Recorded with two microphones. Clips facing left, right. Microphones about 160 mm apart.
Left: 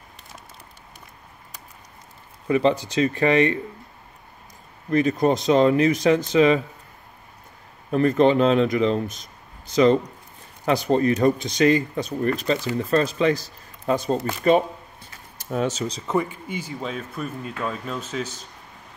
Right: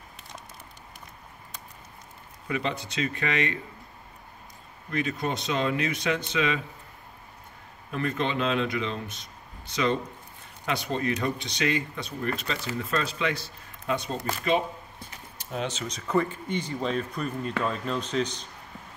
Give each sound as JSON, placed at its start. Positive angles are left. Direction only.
{"t": 2.4, "sound": "speech", "side_deg": 35}
{"t": 4.9, "sound": "speech", "side_deg": 40}
{"t": 7.9, "sound": "speech", "side_deg": 40}
{"t": 10.6, "sound": "speech", "side_deg": 40}
{"t": 16.2, "sound": "speech", "side_deg": 10}